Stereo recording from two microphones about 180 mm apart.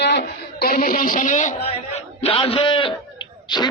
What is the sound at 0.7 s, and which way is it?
Speech, 50° left (ahead or behind).